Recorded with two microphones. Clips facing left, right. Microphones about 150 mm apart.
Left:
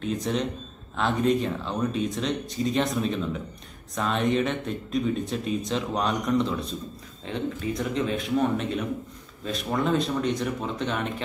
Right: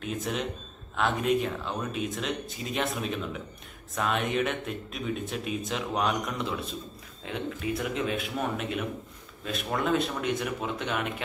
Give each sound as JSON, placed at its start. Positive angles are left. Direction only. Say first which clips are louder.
{"t": 0.0, "sound": "speech", "louder": "left 4 dB", "side_deg": -5}